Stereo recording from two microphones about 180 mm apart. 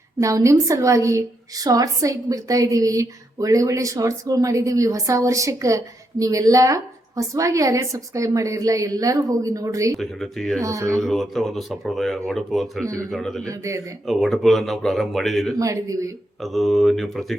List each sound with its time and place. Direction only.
0.2 s a woman's voice: 15° right (ahead or behind)
10.0 s speech: centre (ahead or behind)
10.6 s a woman's voice: 15° right (ahead or behind)
11.0 s speech: centre (ahead or behind)
13.5 s a woman's voice: 20° right (ahead or behind)
14.1 s speech: centre (ahead or behind)
15.5 s a woman's voice: 20° right (ahead or behind)
16.4 s speech: centre (ahead or behind)